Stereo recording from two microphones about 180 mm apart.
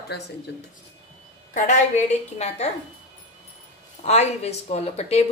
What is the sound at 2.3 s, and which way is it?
Speech, 35° left (ahead or behind).